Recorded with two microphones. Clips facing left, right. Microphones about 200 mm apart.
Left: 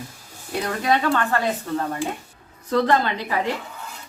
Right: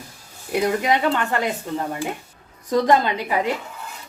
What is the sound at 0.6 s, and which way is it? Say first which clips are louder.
Speech: right 2 dB; 15° right (ahead or behind).